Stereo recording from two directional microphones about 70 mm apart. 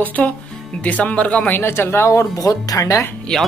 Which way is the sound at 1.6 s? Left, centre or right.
Left.